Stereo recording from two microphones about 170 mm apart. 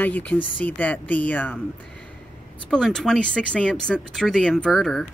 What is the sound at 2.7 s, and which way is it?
Speech, 5° left (ahead or behind).